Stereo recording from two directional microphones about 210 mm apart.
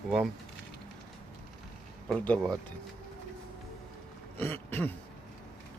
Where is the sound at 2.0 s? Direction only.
5° left (ahead or behind).